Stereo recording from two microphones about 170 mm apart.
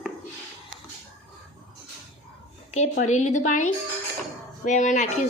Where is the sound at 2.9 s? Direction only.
45° left (ahead or behind).